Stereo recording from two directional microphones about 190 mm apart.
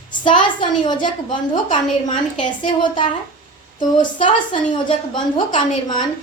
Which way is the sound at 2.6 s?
25° left (ahead or behind).